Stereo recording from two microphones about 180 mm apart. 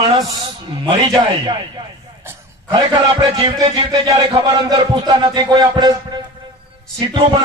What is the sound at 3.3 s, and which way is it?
A man's voice, 25° right (ahead or behind).